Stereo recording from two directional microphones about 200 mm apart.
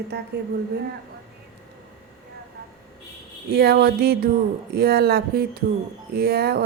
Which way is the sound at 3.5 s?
50° right (ahead or behind).